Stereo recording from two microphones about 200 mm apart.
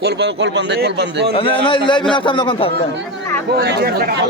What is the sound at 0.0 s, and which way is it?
A man's voice, 55° right (ahead or behind).